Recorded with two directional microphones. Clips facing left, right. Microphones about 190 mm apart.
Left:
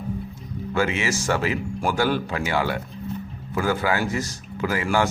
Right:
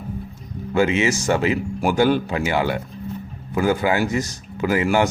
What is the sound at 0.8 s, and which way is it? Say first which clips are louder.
Speech: right 5 dB; 20° right (ahead or behind).